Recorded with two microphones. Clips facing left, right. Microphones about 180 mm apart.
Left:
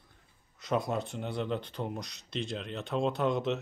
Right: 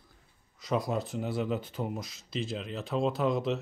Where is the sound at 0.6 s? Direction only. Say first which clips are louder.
Right 1 dB; centre (ahead or behind).